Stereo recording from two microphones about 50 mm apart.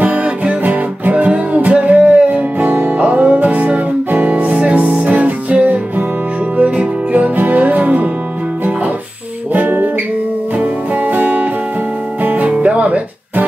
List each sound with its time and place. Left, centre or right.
0.0 s music: right
9.5 s music: right
12.4 s music: right